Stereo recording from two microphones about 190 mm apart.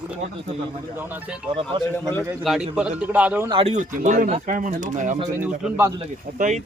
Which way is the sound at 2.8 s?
5° right (ahead or behind).